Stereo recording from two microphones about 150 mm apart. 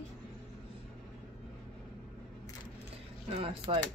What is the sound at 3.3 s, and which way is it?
Speech, 35° right (ahead or behind).